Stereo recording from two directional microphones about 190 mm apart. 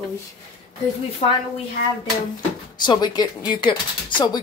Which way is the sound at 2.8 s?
25° left (ahead or behind).